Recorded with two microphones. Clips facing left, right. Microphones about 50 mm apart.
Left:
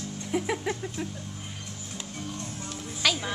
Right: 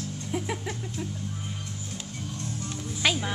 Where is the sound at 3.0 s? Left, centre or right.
Right.